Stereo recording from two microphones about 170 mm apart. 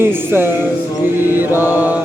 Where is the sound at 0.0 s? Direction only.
15° right (ahead or behind).